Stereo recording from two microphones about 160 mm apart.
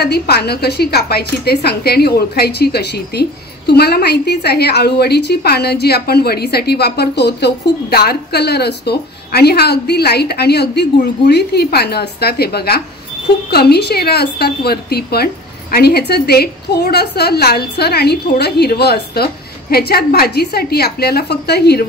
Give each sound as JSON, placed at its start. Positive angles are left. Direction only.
{"t": 0.0, "sound": "a woman's voice", "side_deg": 85}